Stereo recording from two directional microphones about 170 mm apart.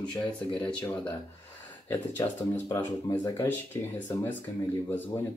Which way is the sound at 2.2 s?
15° left (ahead or behind).